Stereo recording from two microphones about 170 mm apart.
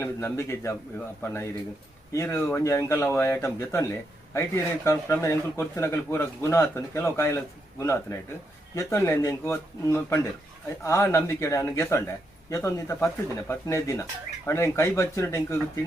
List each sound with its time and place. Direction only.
0.0 s speech: 15° left (ahead or behind)